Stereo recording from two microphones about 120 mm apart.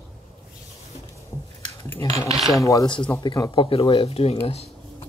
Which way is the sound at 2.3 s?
Centre (ahead or behind).